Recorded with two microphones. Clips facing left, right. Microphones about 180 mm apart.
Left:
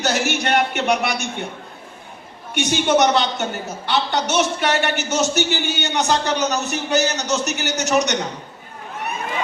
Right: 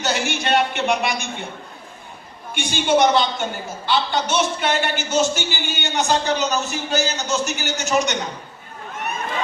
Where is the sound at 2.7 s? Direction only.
70° left (ahead or behind).